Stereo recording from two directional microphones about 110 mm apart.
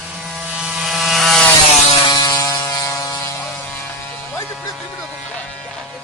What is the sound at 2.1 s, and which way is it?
Ratchet, 35° left (ahead or behind).